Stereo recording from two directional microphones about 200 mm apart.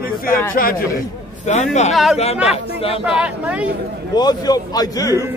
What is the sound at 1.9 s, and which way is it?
Speech, centre (ahead or behind).